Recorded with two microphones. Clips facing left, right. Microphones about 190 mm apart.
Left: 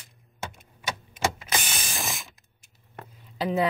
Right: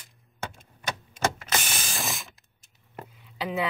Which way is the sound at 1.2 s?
15° left (ahead or behind).